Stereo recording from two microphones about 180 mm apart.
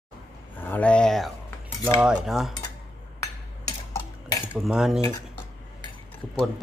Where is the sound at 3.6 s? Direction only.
20° left (ahead or behind).